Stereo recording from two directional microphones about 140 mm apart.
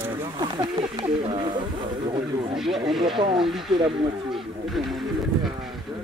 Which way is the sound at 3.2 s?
35° right (ahead or behind).